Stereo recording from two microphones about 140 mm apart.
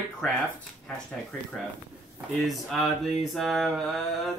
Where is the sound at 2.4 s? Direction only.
Centre (ahead or behind).